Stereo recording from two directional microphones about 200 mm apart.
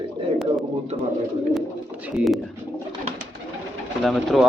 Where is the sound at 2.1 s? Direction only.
Centre (ahead or behind).